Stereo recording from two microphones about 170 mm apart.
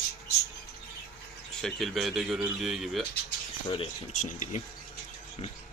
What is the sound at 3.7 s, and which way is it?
Speech, 40° left (ahead or behind).